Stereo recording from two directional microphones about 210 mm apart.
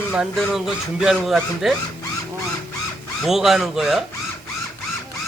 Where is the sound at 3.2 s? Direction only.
Centre (ahead or behind).